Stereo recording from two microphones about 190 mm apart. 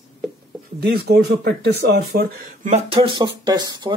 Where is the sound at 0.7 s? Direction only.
60° right (ahead or behind).